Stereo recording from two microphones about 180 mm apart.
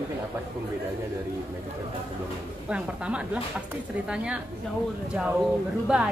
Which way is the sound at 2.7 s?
5° right (ahead or behind).